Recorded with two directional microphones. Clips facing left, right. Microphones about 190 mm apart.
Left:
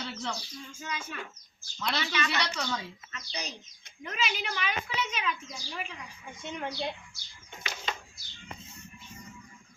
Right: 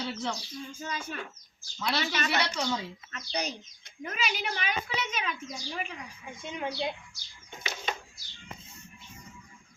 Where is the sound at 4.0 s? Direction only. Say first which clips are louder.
Right 1 dB; 40° right (ahead or behind).